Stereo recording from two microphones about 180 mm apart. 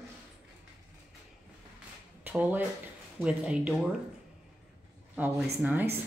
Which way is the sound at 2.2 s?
10° right (ahead or behind).